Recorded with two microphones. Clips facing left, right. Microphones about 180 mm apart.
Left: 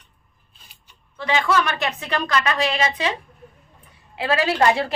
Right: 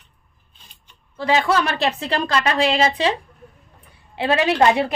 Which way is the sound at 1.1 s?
35° right (ahead or behind).